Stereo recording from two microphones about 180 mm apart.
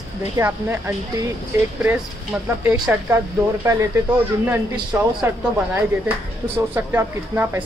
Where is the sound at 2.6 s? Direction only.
5° right (ahead or behind).